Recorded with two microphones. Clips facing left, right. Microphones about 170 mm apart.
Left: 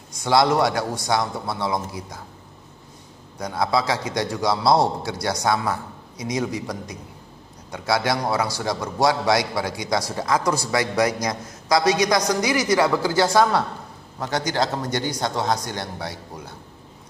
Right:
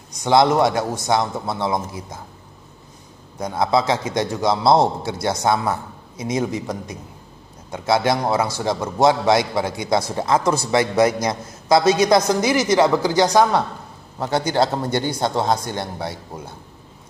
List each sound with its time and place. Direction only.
0.1 s a man's voice: 20° right (ahead or behind)
3.3 s a man's voice: 25° right (ahead or behind)
14.2 s a man's voice: 30° right (ahead or behind)